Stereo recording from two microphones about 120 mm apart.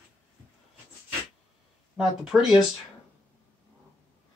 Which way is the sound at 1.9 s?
5° right (ahead or behind).